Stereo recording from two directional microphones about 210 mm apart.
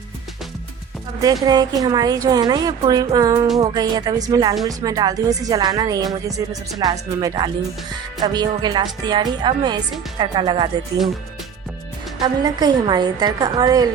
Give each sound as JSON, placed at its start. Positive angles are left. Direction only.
{"t": 1.5, "sound": "a woman's voice", "side_deg": -20}
{"t": 12.2, "sound": "speech", "side_deg": -20}